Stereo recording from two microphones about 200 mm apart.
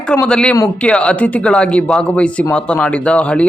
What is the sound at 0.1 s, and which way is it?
Speech, 5° left (ahead or behind).